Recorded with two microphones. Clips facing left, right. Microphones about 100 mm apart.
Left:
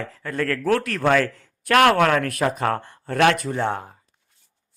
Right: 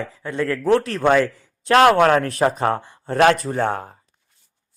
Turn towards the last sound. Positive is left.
turn(degrees=-40)  # may be behind; listen again after turning